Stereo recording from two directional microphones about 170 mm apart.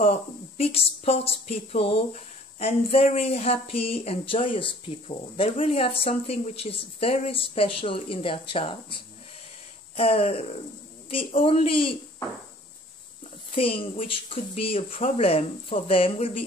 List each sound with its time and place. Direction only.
0.0 s speech: 35° left (ahead or behind)
9.9 s speech: 35° left (ahead or behind)
13.6 s speech: 35° left (ahead or behind)